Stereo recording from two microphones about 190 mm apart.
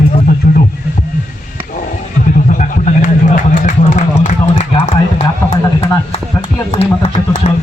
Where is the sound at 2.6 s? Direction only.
40° left (ahead or behind).